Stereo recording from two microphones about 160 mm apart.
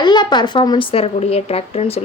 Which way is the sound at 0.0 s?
30° left (ahead or behind).